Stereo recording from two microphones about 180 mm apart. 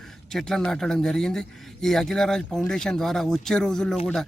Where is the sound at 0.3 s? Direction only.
Centre (ahead or behind).